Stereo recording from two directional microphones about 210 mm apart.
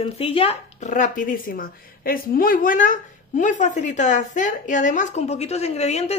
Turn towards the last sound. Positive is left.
turn(degrees=30)  # may be behind; listen again after turning